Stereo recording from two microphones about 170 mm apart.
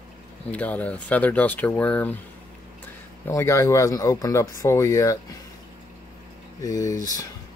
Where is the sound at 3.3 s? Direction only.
15° left (ahead or behind).